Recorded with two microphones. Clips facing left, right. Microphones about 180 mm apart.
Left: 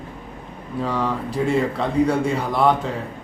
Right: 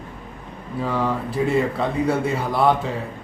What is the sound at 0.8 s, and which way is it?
Speech, centre (ahead or behind).